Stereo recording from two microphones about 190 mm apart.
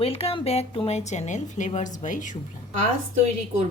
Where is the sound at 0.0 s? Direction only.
30° left (ahead or behind).